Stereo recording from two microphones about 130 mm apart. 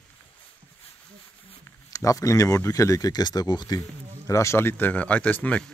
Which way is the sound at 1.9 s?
25° left (ahead or behind).